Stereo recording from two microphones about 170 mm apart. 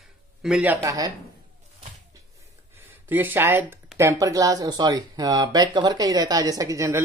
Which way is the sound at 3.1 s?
10° right (ahead or behind).